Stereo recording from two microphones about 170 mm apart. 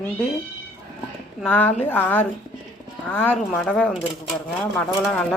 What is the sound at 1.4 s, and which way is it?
A man's voice, 10° left (ahead or behind).